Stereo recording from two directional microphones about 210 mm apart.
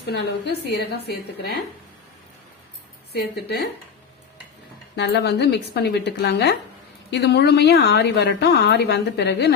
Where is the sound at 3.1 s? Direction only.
50° left (ahead or behind).